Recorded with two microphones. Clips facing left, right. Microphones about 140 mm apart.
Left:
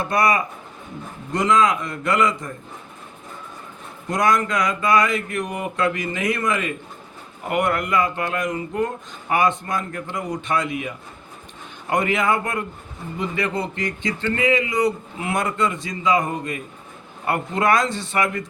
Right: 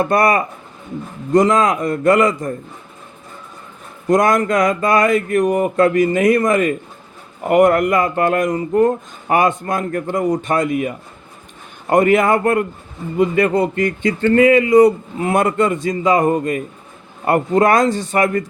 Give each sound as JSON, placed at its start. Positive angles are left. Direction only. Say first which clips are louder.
{"t": 0.0, "sound": "speech", "louder": "right 5 dB", "side_deg": -50}
{"t": 4.1, "sound": "speech", "louder": "right 6 dB", "side_deg": -50}